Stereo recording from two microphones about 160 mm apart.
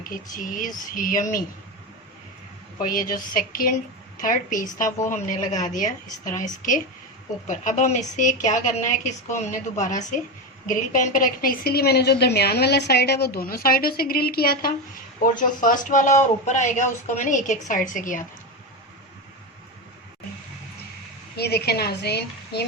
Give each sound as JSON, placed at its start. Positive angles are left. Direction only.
{"t": 0.0, "sound": "speech", "side_deg": 60}
{"t": 2.8, "sound": "speech", "side_deg": 60}
{"t": 7.4, "sound": "a woman's voice", "side_deg": 50}
{"t": 15.4, "sound": "speech", "side_deg": 55}
{"t": 21.3, "sound": "a woman's voice", "side_deg": 90}